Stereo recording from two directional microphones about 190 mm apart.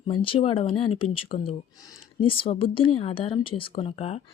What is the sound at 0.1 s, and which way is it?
Speech, 25° left (ahead or behind).